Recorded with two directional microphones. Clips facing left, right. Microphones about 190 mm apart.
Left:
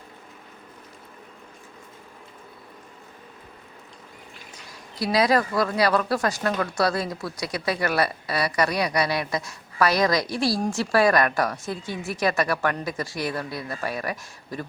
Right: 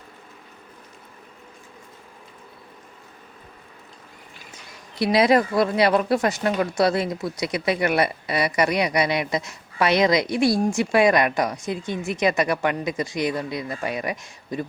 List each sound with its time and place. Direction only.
4.9 s speech: 25° right (ahead or behind)